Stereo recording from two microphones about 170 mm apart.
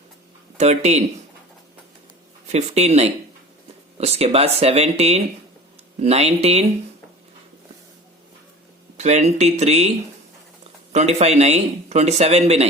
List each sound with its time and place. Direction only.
0.5 s speech: 40° right (ahead or behind)
2.5 s speech: 40° right (ahead or behind)
9.0 s speech: 40° right (ahead or behind)
10.9 s speech: 40° right (ahead or behind)